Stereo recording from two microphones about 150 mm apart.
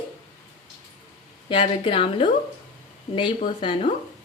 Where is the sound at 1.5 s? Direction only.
35° left (ahead or behind).